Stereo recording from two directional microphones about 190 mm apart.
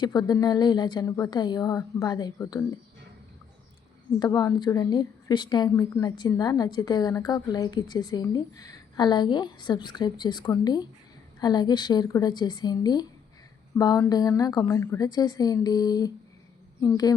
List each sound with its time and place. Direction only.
0.0 s a woman's voice: 20° left (ahead or behind)
4.2 s a woman's voice: 20° left (ahead or behind)